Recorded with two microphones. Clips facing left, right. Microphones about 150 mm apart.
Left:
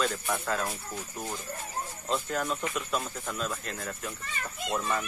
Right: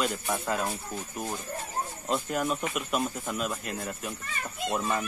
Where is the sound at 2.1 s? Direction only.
15° right (ahead or behind).